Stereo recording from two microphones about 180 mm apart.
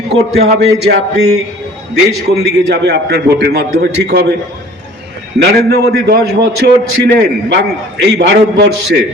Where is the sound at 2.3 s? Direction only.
70° right (ahead or behind).